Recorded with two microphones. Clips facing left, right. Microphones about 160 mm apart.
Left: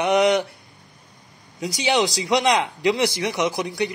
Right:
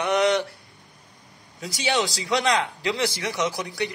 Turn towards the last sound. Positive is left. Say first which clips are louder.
# left 4 dB
turn(degrees=15)  # may be behind; listen again after turning